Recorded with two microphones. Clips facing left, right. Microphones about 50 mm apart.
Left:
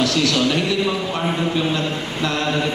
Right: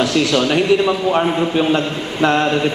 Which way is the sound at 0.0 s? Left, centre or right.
Right.